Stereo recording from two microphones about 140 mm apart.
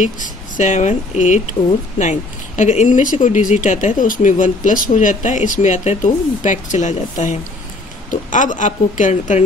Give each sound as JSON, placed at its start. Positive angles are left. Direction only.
{"t": 0.0, "sound": "speech", "side_deg": 65}